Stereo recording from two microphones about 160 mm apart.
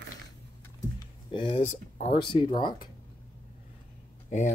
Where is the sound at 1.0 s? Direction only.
30° left (ahead or behind).